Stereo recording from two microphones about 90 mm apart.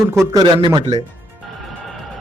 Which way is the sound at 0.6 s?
55° right (ahead or behind).